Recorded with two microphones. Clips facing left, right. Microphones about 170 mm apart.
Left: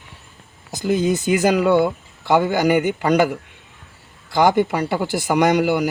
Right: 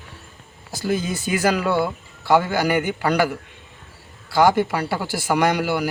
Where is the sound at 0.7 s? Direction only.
20° left (ahead or behind).